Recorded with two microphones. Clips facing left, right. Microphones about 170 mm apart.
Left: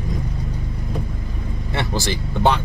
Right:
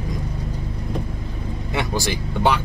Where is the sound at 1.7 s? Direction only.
15° right (ahead or behind).